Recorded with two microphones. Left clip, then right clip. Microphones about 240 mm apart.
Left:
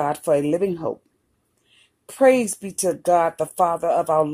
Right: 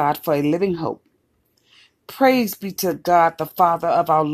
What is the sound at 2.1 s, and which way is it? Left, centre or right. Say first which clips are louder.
Speech: left 1 dB; right.